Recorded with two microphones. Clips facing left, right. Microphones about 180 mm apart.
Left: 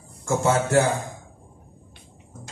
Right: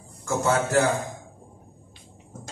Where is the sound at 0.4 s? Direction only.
25° left (ahead or behind).